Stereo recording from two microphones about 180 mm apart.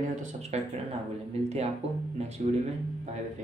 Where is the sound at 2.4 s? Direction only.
40° right (ahead or behind).